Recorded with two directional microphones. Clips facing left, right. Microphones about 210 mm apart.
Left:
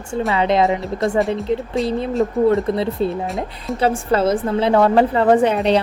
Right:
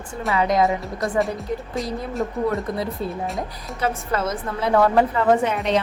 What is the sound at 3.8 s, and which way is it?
A woman's voice, 30° left (ahead or behind).